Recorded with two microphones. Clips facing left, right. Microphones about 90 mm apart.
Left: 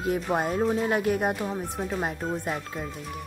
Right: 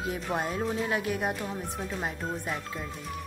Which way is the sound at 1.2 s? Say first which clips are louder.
Left 4 dB; 5° left (ahead or behind).